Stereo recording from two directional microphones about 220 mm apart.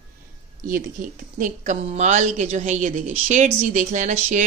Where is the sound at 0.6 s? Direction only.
40° right (ahead or behind).